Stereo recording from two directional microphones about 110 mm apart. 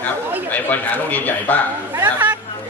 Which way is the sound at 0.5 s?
15° left (ahead or behind).